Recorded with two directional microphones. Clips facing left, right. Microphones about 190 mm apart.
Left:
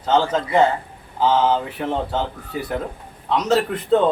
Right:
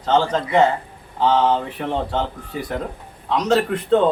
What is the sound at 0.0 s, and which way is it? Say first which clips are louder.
A man's voice: even; 5° left (ahead or behind).